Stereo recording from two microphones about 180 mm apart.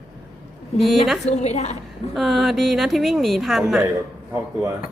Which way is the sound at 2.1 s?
Centre (ahead or behind).